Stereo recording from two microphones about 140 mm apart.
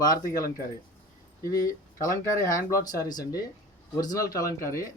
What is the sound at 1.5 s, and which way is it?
Speech, 25° left (ahead or behind).